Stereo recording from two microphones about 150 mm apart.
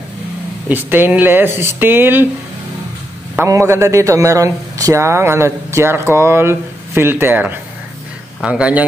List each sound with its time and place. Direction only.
0.7 s speech: 10° right (ahead or behind)
3.3 s speech: 20° right (ahead or behind)